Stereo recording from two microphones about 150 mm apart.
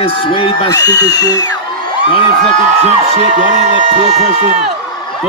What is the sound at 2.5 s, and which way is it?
A man's voice, 50° right (ahead or behind).